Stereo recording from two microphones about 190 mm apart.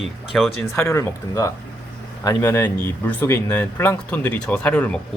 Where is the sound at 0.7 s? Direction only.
15° left (ahead or behind).